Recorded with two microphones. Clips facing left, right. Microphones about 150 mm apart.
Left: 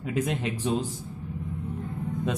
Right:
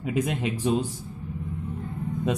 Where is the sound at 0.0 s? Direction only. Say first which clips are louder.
Right 2 dB; 15° right (ahead or behind).